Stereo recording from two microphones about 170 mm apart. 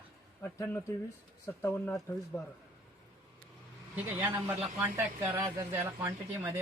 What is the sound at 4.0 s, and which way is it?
Speech, 10° right (ahead or behind).